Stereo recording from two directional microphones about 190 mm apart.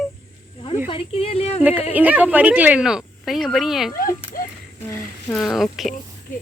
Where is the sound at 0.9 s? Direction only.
30° left (ahead or behind).